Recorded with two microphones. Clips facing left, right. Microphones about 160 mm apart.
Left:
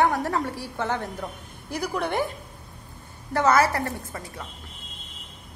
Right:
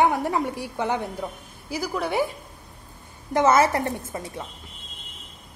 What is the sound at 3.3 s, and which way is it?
A woman's voice, 20° right (ahead or behind).